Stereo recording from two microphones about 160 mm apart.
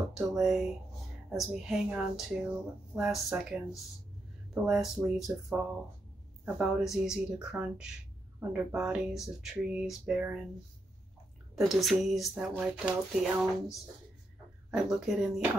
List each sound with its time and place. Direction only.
0.1 s speech: 5° right (ahead or behind)
4.6 s speech: centre (ahead or behind)
11.5 s speech: centre (ahead or behind)